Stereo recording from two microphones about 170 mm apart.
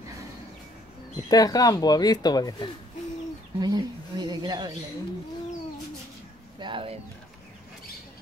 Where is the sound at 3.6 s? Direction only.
25° right (ahead or behind).